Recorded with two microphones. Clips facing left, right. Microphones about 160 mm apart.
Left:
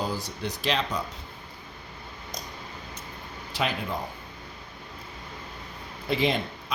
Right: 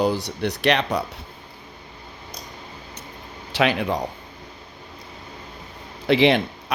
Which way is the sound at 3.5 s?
75° right (ahead or behind).